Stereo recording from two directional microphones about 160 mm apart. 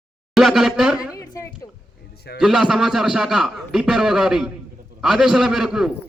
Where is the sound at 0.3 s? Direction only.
Centre (ahead or behind).